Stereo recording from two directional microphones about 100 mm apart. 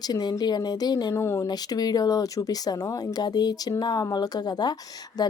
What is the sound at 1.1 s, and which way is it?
Speech, 25° left (ahead or behind).